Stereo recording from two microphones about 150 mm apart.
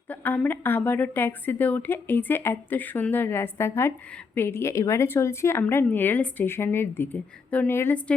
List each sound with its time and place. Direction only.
0.1 s speech: 10° left (ahead or behind)